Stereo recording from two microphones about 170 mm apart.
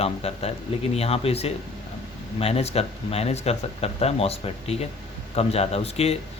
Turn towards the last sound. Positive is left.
turn(degrees=35)  # may be behind; listen again after turning